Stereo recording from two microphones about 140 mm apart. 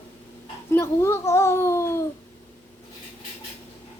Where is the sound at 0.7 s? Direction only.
20° left (ahead or behind).